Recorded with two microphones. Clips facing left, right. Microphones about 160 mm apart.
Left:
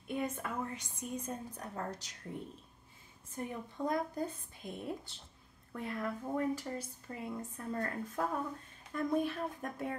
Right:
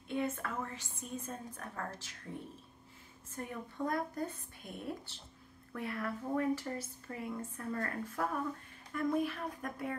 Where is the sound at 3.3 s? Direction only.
20° left (ahead or behind).